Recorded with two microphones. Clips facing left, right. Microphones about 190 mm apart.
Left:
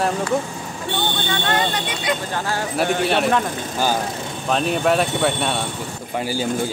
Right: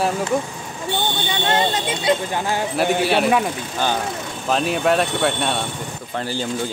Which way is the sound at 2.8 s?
5° right (ahead or behind).